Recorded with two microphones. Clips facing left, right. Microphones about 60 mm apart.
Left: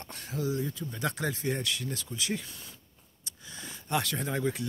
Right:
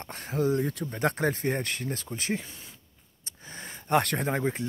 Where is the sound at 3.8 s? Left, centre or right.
Right.